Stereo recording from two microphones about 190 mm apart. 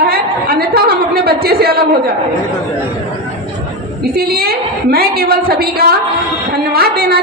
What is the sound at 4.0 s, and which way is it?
A woman's voice, 55° right (ahead or behind).